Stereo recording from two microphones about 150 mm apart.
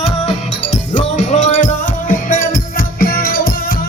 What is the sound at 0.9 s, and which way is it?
Music, 55° left (ahead or behind).